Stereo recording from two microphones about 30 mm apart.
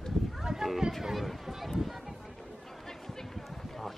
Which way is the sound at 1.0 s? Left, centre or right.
Centre.